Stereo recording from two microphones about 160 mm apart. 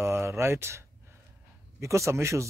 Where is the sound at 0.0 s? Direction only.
15° right (ahead or behind).